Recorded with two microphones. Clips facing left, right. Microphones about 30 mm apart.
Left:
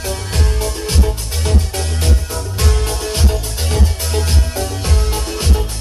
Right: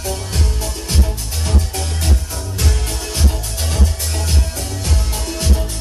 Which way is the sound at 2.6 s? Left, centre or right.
Left.